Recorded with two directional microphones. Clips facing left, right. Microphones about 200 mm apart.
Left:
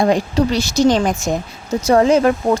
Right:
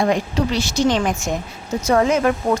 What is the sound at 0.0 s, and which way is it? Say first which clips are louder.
A woman's voice: left 4 dB; 35° left (ahead or behind).